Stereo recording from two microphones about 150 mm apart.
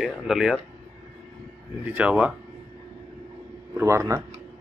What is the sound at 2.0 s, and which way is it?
Speech, 10° right (ahead or behind).